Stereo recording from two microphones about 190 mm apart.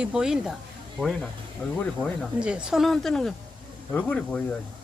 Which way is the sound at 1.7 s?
5° left (ahead or behind).